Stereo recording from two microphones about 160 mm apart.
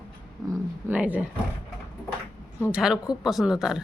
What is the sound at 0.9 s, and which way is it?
Speech, 10° right (ahead or behind).